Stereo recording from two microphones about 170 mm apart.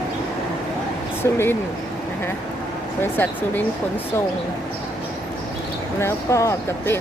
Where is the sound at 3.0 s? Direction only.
10° left (ahead or behind).